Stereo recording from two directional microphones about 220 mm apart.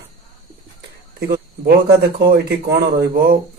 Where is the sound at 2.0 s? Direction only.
45° right (ahead or behind).